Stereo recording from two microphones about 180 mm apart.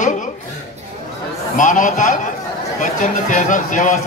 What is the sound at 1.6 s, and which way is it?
A man's voice, 45° left (ahead or behind).